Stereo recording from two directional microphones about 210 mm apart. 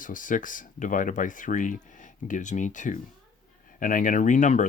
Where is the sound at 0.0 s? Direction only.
40° left (ahead or behind).